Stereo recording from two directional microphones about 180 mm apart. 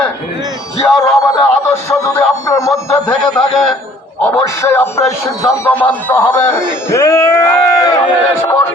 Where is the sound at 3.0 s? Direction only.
5° left (ahead or behind).